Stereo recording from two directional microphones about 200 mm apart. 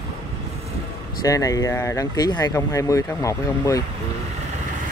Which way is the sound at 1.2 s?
15° left (ahead or behind).